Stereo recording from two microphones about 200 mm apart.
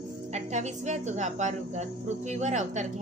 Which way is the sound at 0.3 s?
35° right (ahead or behind).